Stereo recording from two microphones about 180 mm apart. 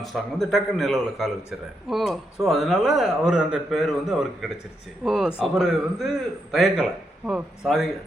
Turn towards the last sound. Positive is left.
turn(degrees=0)  # may be behind; listen again after turning